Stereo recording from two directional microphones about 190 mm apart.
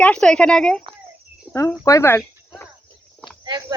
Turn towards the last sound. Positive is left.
turn(degrees=-20)  # may be behind; listen again after turning